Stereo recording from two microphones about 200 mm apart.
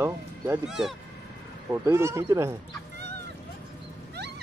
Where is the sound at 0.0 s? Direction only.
5° right (ahead or behind).